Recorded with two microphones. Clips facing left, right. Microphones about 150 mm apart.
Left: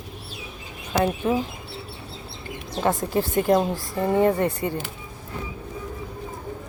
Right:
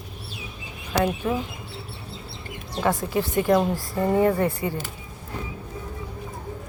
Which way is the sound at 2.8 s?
35° left (ahead or behind).